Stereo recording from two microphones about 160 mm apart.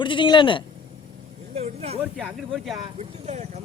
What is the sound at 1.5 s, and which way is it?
Speech, 40° right (ahead or behind).